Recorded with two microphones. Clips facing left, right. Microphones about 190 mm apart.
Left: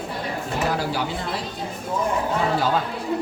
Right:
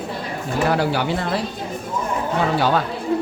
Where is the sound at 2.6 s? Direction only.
70° right (ahead or behind).